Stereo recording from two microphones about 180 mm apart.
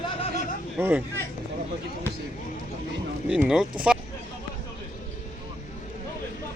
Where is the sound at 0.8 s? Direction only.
10° right (ahead or behind).